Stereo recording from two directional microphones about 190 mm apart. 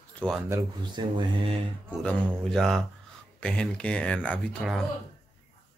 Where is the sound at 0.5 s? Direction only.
20° right (ahead or behind).